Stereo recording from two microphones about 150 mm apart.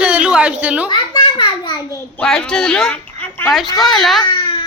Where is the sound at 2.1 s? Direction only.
5° left (ahead or behind).